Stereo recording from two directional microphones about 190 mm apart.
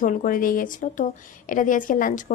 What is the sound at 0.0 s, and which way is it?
A woman's voice, 45° left (ahead or behind).